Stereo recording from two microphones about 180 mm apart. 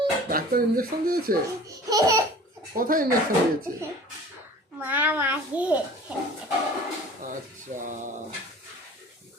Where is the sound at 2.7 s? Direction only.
50° right (ahead or behind).